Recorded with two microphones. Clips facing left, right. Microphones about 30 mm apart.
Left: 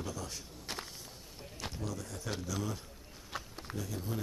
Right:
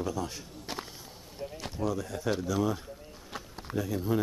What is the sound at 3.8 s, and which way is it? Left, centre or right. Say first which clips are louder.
Speech: right 10 dB; right.